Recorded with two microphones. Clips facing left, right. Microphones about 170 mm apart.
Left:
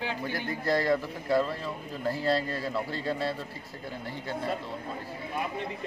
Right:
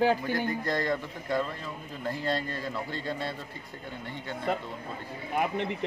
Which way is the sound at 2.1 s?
35° left (ahead or behind).